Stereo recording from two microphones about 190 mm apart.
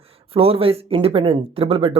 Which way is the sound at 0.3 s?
30° right (ahead or behind).